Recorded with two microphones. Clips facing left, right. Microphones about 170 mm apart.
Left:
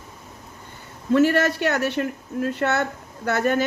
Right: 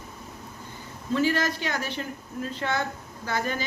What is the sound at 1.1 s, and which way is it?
Speech, 60° left (ahead or behind).